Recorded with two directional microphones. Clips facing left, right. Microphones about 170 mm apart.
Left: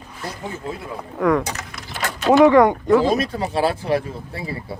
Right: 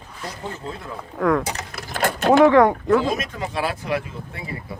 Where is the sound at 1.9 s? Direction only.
50° right (ahead or behind).